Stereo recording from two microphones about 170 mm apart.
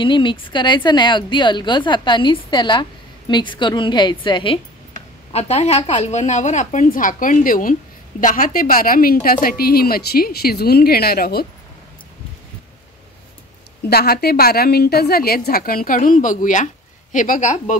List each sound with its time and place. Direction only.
0.0 s a woman's voice: 30° left (ahead or behind); by 11.4 s 65° left (ahead or behind)
13.8 s a woman's voice: 65° left (ahead or behind); by 17.7 s 45° left (ahead or behind)